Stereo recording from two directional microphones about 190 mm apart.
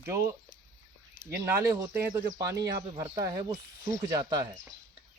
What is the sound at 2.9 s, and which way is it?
Speech, 20° right (ahead or behind).